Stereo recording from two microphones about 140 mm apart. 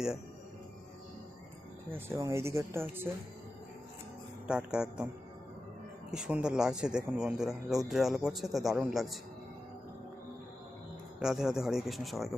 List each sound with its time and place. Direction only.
1.9 s speech: 20° right (ahead or behind)
4.4 s speech: 5° right (ahead or behind)
6.1 s speech: 5° right (ahead or behind)
11.2 s speech: 5° right (ahead or behind)